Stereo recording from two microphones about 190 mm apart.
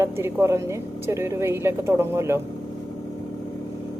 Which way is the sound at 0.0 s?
15° right (ahead or behind).